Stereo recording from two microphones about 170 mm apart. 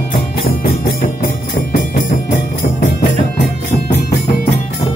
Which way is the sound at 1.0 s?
55° left (ahead or behind).